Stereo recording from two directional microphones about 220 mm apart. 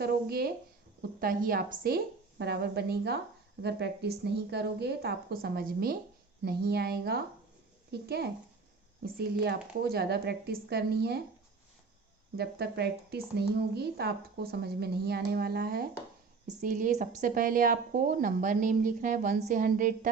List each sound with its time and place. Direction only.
0.0 s a woman's voice: 45° right (ahead or behind)
12.4 s a woman's voice: 45° right (ahead or behind)